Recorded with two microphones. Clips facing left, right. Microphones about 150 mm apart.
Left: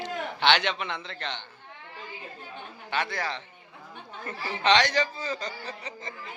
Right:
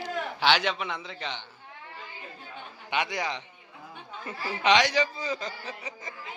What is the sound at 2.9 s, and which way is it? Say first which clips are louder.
A man's voice: right 1 dB; 15° right (ahead or behind).